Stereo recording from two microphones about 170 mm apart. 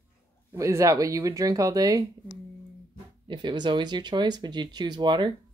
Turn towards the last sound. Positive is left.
turn(degrees=-25)  # may be behind; listen again after turning